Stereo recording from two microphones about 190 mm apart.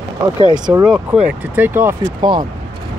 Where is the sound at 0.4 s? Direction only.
20° right (ahead or behind).